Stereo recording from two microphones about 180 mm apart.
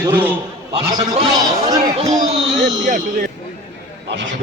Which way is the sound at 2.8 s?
50° right (ahead or behind).